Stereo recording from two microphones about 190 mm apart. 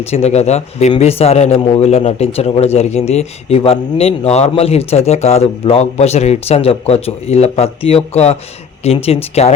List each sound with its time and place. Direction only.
0.0 s speech: 30° left (ahead or behind)